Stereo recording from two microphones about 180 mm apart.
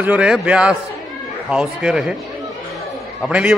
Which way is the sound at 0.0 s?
5° right (ahead or behind).